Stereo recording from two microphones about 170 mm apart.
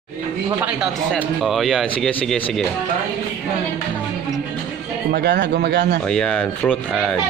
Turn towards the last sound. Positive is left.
turn(degrees=10)  # may be behind; listen again after turning